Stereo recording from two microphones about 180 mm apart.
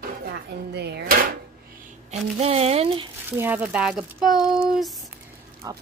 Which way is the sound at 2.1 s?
35° right (ahead or behind).